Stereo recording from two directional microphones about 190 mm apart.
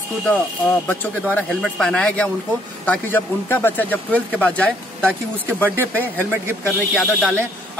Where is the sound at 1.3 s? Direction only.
5° left (ahead or behind).